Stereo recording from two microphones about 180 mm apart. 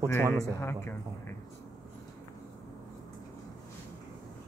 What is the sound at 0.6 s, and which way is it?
Speech, 15° left (ahead or behind).